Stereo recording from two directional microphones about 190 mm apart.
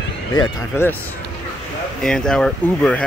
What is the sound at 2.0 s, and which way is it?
Speech, 5° left (ahead or behind).